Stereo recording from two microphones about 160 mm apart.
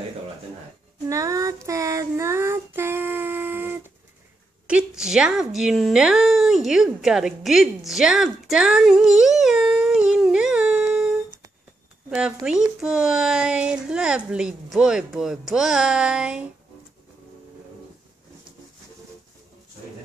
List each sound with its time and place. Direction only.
1.0 s child singing: 20° right (ahead or behind)
4.6 s speech: 5° right (ahead or behind)